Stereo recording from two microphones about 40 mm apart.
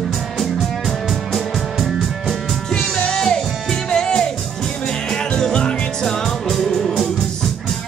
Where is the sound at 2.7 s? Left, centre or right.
Centre.